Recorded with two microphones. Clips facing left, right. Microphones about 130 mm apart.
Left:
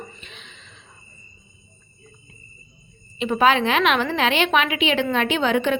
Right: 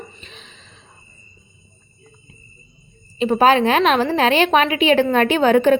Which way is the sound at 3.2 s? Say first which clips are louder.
Right 4 dB; 40° right (ahead or behind).